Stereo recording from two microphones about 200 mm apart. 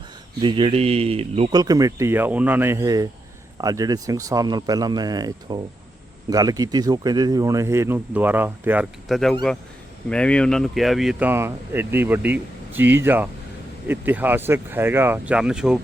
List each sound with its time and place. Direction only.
0.4 s speech: 25° right (ahead or behind)
1.6 s speech: 15° right (ahead or behind)